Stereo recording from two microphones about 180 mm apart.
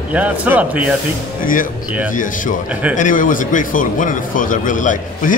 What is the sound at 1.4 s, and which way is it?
Speech, 50° left (ahead or behind).